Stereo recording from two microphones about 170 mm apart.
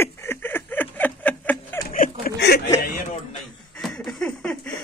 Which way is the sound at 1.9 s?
55° left (ahead or behind).